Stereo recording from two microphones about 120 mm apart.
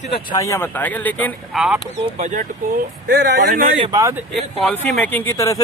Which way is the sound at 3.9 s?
30° right (ahead or behind).